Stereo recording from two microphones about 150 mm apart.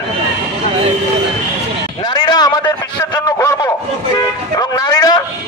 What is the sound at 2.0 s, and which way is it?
A man's voice, 30° left (ahead or behind).